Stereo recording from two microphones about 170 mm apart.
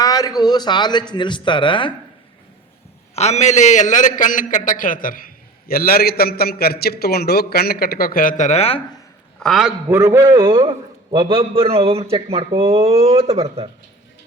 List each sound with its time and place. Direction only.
0.0 s a man's voice: 20° left (ahead or behind)
3.2 s a man's voice: 40° left (ahead or behind)
9.4 s a man's voice: centre (ahead or behind)
9.9 s a man's voice: 15° right (ahead or behind); by 13.7 s 35° right (ahead or behind)